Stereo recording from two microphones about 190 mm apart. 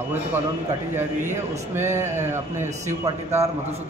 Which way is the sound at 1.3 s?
15° right (ahead or behind).